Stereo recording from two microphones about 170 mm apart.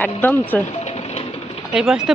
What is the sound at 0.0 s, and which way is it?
Speech, 10° left (ahead or behind).